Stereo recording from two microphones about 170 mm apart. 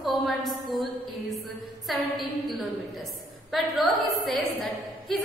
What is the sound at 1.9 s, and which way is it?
Speech, centre (ahead or behind).